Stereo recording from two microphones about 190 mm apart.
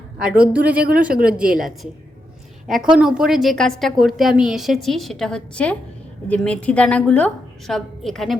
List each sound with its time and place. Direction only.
0.2 s a woman's voice: 5° right (ahead or behind)
1.5 s a woman's voice: 45° right (ahead or behind)
2.9 s a woman's voice: 5° right (ahead or behind)